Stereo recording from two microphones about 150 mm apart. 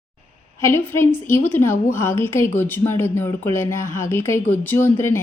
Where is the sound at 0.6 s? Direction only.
15° left (ahead or behind).